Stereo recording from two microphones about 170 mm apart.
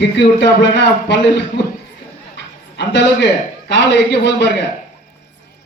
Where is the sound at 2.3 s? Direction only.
90° left.